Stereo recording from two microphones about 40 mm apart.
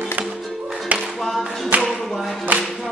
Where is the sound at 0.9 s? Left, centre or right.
Right.